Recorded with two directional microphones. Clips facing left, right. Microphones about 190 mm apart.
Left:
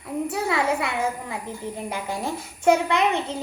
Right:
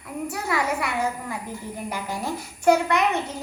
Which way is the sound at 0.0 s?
25° left (ahead or behind).